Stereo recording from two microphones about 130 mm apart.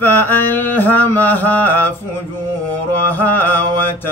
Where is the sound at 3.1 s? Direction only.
15° left (ahead or behind).